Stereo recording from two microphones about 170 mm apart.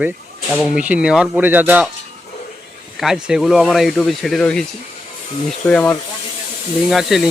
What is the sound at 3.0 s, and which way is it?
Speech, centre (ahead or behind).